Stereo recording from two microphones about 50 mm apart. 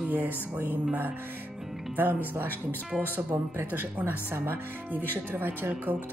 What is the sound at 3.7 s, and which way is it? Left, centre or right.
Speech, right.